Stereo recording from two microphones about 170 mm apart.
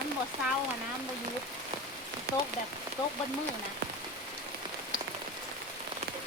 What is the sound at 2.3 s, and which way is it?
Speech, 70° right (ahead or behind).